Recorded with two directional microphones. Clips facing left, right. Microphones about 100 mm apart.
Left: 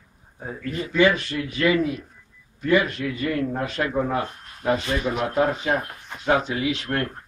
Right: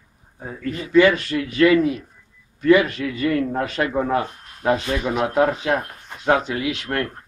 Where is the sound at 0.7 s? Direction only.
55° right (ahead or behind).